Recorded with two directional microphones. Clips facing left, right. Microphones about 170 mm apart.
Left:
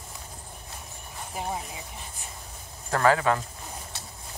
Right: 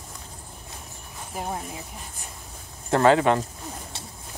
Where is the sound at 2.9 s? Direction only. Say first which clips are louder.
Right 4 dB; 25° right (ahead or behind).